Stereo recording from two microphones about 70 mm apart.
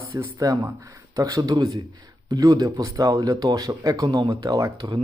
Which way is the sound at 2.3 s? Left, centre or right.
Right.